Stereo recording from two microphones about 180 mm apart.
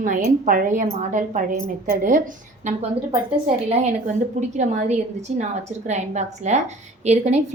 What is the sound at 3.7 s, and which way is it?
A woman's voice, 40° right (ahead or behind).